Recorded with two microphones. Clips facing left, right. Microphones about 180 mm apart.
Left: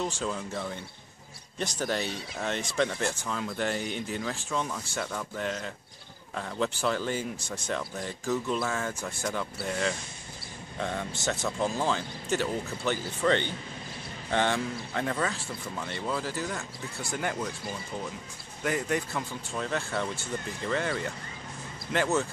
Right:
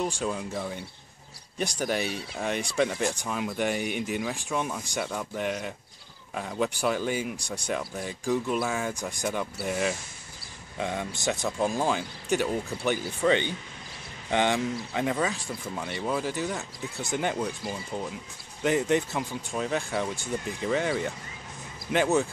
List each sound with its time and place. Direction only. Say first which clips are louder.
0.0 s speech: right 2 dB; 15° right (ahead or behind)